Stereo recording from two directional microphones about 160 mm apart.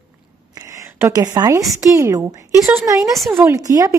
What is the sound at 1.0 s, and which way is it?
Speech, 20° right (ahead or behind).